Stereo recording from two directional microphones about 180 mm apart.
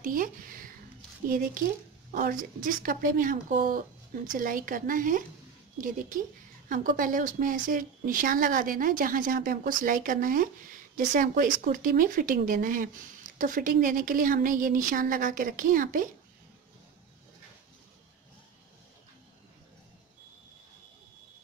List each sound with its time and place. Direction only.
0.0 s speech: 50° right (ahead or behind)